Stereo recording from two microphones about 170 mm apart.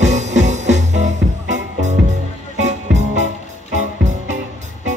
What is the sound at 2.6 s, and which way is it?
Music, 90° right.